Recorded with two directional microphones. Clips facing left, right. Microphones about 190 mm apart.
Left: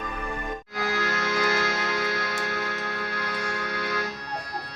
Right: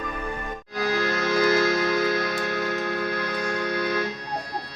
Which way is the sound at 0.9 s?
35° right (ahead or behind).